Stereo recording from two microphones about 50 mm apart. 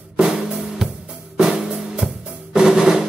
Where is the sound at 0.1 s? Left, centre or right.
Centre.